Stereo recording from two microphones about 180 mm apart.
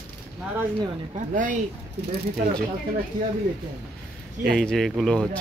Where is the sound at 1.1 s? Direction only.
45° right (ahead or behind).